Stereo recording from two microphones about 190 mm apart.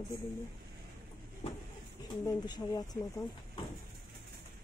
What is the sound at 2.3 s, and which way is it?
Speech, 20° left (ahead or behind).